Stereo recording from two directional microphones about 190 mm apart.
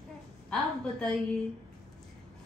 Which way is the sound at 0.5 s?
5° left (ahead or behind).